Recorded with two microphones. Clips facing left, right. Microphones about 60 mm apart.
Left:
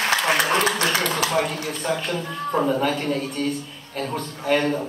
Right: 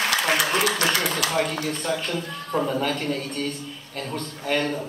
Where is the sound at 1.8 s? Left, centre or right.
Centre.